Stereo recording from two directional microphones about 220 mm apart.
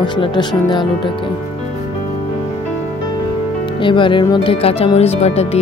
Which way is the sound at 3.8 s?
20° left (ahead or behind).